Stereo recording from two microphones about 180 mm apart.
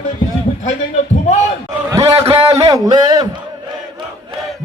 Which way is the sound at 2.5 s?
20° right (ahead or behind).